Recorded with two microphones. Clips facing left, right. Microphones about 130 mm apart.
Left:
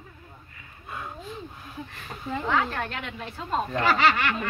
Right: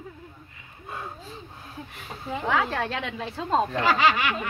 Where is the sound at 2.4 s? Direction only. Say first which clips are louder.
Right 2 dB; 80° right.